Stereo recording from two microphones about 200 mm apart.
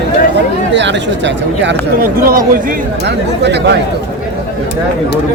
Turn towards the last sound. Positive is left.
turn(degrees=-60)  # may be behind; listen again after turning